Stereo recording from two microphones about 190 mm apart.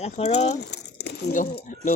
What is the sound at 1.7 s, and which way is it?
Speech, 45° left (ahead or behind).